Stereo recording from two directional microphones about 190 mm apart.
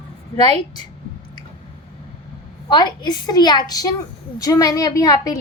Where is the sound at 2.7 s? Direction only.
20° left (ahead or behind).